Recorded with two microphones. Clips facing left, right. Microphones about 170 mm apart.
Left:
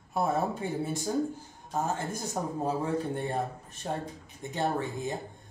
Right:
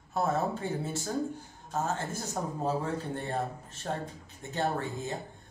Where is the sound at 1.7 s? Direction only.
15° left (ahead or behind).